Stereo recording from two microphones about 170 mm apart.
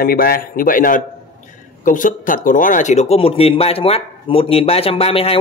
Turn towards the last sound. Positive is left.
turn(degrees=35)  # may be behind; listen again after turning